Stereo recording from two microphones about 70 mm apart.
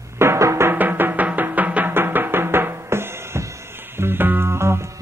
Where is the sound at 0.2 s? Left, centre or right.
Right.